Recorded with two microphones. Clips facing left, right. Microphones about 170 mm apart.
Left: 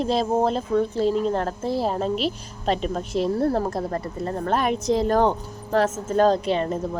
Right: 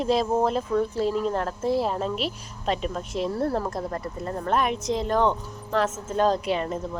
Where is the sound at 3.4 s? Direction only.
35° left (ahead or behind).